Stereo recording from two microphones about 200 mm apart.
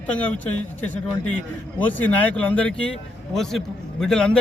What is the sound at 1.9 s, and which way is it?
A man's voice, 5° left (ahead or behind).